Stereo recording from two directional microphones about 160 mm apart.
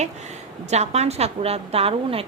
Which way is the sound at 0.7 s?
45° right (ahead or behind).